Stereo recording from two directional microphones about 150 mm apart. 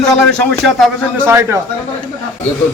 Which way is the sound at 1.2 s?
15° right (ahead or behind).